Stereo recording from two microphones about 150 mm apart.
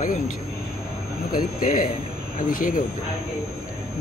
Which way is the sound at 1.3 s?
65° left (ahead or behind).